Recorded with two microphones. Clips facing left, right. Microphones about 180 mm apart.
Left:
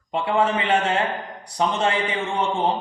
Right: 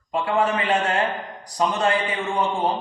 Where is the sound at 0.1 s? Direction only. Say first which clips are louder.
Left 1 dB; 25° left (ahead or behind).